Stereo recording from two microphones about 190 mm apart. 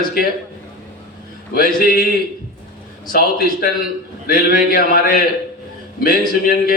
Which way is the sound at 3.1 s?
50° left (ahead or behind).